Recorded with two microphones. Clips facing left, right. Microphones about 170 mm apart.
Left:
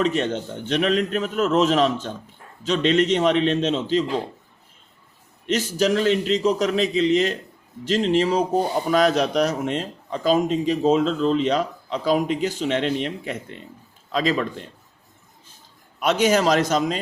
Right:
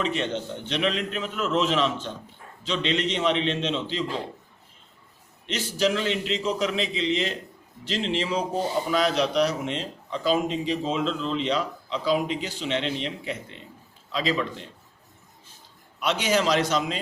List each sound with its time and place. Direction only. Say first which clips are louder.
0.0 s speech: left 5 dB; 45° left (ahead or behind)
5.5 s speech: left 4 dB; 45° left (ahead or behind)
16.0 s speech: left 5 dB; 45° left (ahead or behind)